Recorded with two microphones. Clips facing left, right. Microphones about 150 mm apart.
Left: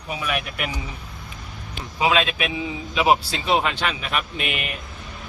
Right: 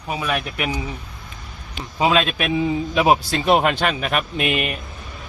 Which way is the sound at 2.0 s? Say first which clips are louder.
Right 2 dB; 40° right (ahead or behind).